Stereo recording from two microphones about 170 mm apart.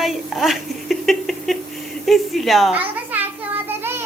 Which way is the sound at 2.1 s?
Centre (ahead or behind).